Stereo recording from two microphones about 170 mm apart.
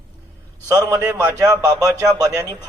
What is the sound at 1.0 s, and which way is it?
Speech, 10° right (ahead or behind).